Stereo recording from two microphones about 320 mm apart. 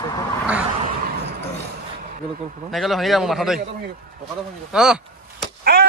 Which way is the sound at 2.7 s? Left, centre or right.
Centre.